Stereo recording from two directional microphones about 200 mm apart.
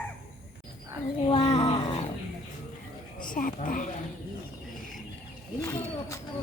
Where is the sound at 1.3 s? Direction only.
30° left (ahead or behind).